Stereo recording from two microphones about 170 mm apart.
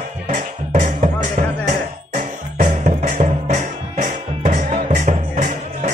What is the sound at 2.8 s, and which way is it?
Music, 45° right (ahead or behind).